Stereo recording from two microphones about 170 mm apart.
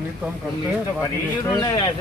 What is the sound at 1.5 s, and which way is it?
Speech, 20° left (ahead or behind).